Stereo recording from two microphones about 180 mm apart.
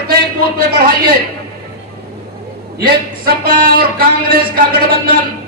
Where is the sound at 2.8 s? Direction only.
55° right (ahead or behind).